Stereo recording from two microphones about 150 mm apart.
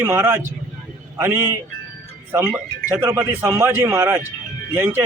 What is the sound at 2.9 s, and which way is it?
A man's voice, 15° right (ahead or behind).